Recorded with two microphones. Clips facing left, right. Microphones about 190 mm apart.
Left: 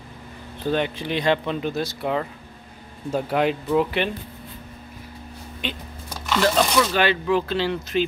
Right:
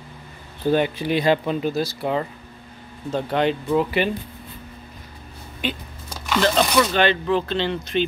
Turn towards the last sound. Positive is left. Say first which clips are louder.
# even
turn(degrees=5)  # may be behind; listen again after turning